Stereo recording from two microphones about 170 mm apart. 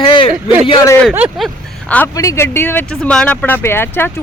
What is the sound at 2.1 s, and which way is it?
A woman's voice, 20° left (ahead or behind).